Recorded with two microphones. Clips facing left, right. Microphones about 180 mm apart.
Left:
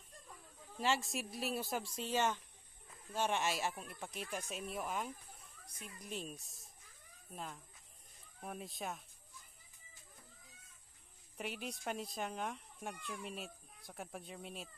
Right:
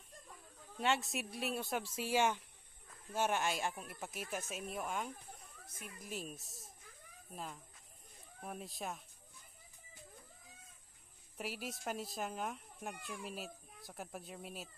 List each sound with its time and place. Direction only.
0.7 s speech: centre (ahead or behind)
2.0 s speech: 10° right (ahead or behind)
11.3 s speech: centre (ahead or behind)